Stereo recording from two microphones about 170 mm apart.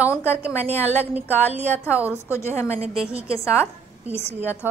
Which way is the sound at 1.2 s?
10° left (ahead or behind).